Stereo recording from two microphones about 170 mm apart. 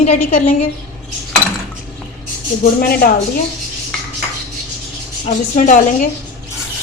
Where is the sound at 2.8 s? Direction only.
60° left (ahead or behind).